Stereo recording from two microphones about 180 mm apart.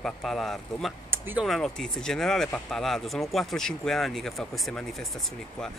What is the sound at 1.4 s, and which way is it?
Speech, centre (ahead or behind).